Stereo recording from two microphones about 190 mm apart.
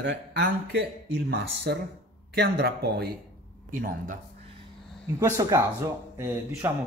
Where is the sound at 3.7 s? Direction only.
45° right (ahead or behind).